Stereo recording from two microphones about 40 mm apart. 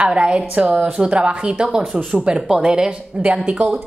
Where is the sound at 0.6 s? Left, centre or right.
Right.